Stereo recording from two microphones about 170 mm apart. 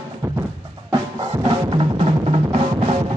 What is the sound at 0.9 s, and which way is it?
Music, 25° right (ahead or behind).